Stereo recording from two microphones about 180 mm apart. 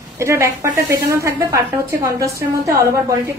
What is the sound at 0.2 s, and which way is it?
A woman's voice, 15° right (ahead or behind).